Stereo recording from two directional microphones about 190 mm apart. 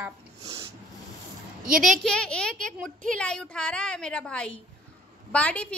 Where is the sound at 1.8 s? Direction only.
Centre (ahead or behind).